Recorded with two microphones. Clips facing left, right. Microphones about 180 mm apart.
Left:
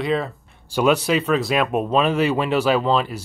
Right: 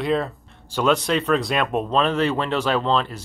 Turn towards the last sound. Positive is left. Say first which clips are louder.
# left 2 dB
turn(degrees=10)  # may be behind; listen again after turning